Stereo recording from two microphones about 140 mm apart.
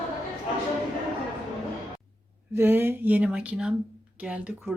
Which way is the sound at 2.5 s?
15° right (ahead or behind).